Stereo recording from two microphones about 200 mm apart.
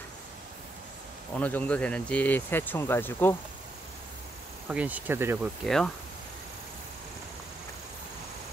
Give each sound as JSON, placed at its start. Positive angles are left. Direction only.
{"t": 1.4, "sound": "speech", "side_deg": 5}
{"t": 4.6, "sound": "speech", "side_deg": -10}
{"t": 5.6, "sound": "speech", "side_deg": 0}